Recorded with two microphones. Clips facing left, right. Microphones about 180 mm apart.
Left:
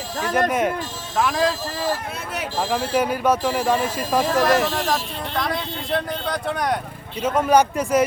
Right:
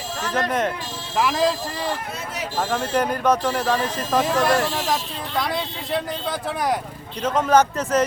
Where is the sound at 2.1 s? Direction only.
60° left (ahead or behind).